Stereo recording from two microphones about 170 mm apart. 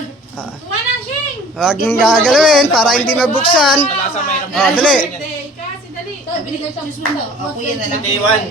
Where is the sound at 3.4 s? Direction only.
30° left (ahead or behind).